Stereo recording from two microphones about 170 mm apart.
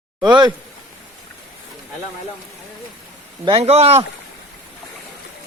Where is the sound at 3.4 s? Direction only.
35° right (ahead or behind).